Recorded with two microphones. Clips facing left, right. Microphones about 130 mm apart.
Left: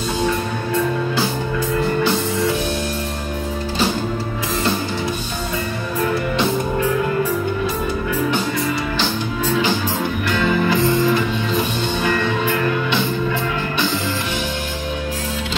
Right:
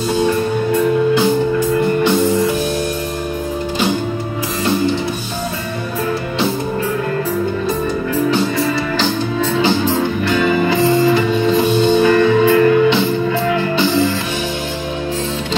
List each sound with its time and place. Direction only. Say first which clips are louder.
2.0 s music: right 6 dB; 25° right (ahead or behind)
9.8 s music: right 5 dB; 20° right (ahead or behind)